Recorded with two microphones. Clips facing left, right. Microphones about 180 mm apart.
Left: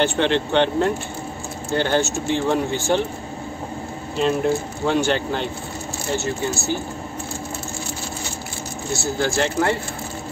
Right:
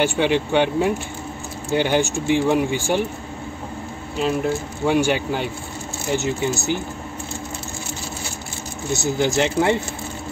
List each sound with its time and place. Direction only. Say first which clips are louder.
0.0 s speech: even; 10° right (ahead or behind)
4.2 s speech: left 2 dB; 5° right (ahead or behind)
8.9 s speech: right 2 dB; 20° right (ahead or behind)